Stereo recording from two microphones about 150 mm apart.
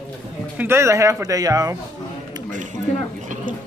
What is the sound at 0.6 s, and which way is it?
Speech, 15° right (ahead or behind).